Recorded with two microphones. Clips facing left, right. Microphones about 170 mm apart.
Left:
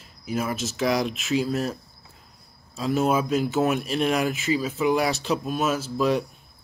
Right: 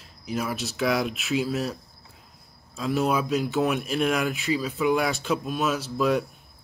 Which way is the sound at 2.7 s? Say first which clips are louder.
Left 2 dB; centre (ahead or behind).